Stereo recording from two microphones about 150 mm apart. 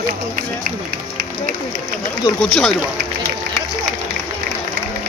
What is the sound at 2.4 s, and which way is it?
Speech, 5° left (ahead or behind).